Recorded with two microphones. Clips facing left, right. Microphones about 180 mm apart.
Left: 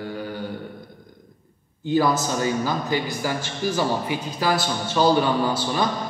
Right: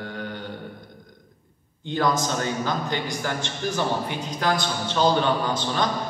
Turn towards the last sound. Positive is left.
turn(degrees=10)  # may be behind; listen again after turning